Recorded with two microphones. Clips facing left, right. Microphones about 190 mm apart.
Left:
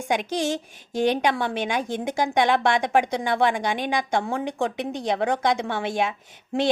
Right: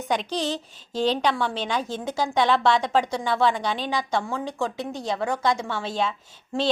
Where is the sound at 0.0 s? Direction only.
10° left (ahead or behind).